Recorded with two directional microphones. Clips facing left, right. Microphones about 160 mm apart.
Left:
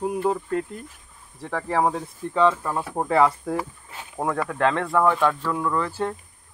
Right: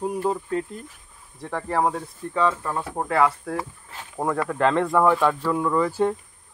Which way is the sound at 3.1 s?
20° left (ahead or behind).